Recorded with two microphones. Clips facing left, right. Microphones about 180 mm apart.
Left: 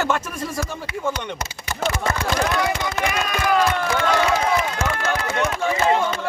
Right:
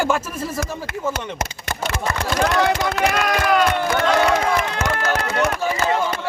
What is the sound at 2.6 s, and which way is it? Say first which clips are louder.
Speech: right 4 dB; 65° right (ahead or behind).